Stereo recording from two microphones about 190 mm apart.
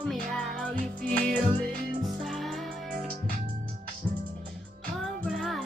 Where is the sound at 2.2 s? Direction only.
Centre (ahead or behind).